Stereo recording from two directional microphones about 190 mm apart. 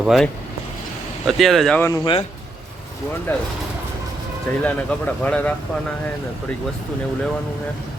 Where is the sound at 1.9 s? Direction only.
25° left (ahead or behind).